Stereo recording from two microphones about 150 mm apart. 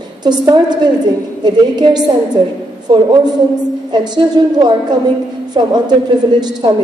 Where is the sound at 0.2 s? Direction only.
30° right (ahead or behind).